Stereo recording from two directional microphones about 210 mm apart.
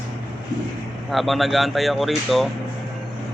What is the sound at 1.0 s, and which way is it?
A man's voice, centre (ahead or behind).